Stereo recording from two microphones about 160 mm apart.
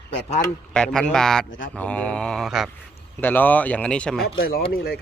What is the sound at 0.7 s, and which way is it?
A man's voice, 5° left (ahead or behind).